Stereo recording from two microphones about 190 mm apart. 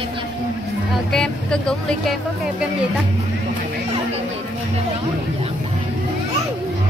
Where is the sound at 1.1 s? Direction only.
5° left (ahead or behind).